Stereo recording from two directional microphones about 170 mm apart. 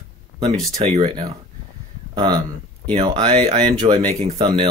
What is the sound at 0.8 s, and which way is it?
Speech, 35° right (ahead or behind).